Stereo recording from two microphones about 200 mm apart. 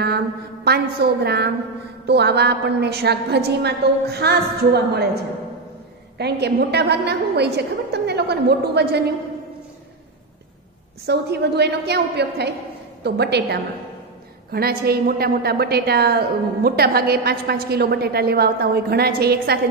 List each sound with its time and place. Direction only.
0.7 s a woman's voice: 55° right (ahead or behind)
6.1 s a woman's voice: 55° right (ahead or behind)
11.1 s a woman's voice: 55° right (ahead or behind)